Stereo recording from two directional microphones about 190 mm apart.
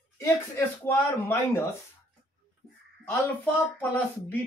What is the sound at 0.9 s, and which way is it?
Speech, 10° left (ahead or behind).